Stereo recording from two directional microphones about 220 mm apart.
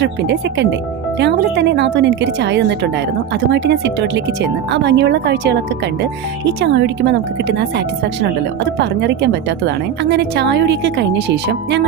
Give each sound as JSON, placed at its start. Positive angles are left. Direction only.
{"t": 0.0, "sound": "speech", "side_deg": -50}